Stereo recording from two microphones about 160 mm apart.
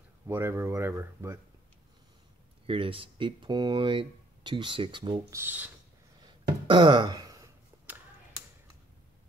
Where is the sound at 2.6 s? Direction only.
35° right (ahead or behind).